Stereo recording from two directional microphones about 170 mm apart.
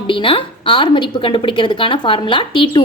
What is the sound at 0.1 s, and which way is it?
A woman's voice, 30° left (ahead or behind).